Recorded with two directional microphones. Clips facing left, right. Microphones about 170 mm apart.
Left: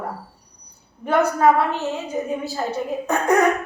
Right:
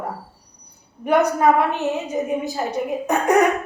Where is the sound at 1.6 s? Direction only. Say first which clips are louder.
Right 2 dB; 15° right (ahead or behind).